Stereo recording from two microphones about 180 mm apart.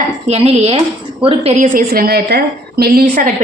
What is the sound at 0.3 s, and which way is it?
Dishes, 35° right (ahead or behind).